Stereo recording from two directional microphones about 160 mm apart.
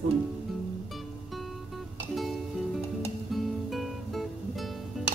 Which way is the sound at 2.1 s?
Centre (ahead or behind).